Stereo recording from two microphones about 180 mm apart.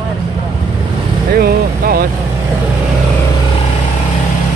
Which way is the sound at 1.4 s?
55° right (ahead or behind).